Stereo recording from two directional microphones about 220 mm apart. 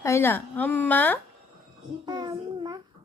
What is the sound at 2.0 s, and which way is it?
Speech, 20° right (ahead or behind).